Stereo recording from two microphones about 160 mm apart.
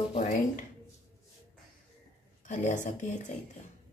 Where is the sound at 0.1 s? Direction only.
50° left (ahead or behind).